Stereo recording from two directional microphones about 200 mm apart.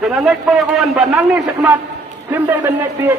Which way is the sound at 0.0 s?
Centre (ahead or behind).